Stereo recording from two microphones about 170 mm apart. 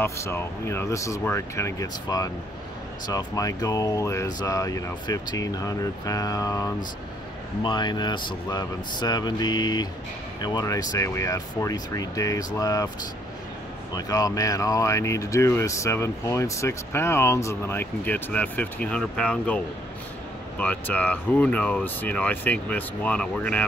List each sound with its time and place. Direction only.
0.0 s speech: 15° left (ahead or behind)
13.9 s speech: 20° left (ahead or behind)